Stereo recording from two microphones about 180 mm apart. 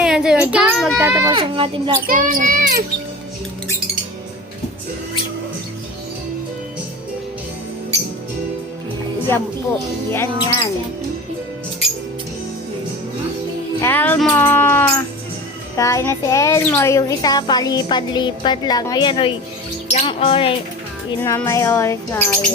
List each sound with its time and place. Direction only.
0.0 s a sound: 5° right (ahead or behind)
0.9 s children playing: 15° right (ahead or behind)
1.3 s a child's voice: 30° right (ahead or behind)
2.0 s a child's voice: 50° right (ahead or behind)
9.3 s music: 15° left (ahead or behind)
13.8 s music: 10° left (ahead or behind)
15.7 s a child's voice: 20° left (ahead or behind)
21.2 s music: 15° left (ahead or behind)